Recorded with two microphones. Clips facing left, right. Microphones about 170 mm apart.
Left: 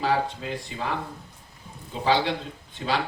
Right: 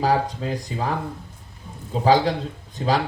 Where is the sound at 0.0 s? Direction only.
40° right (ahead or behind).